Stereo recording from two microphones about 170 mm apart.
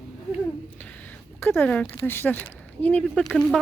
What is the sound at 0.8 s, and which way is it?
Speech, 10° left (ahead or behind).